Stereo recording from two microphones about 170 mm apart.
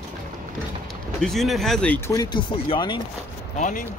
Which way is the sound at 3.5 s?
50° left (ahead or behind).